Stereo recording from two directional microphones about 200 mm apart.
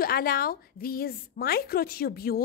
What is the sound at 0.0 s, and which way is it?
A woman's voice, 50° left (ahead or behind).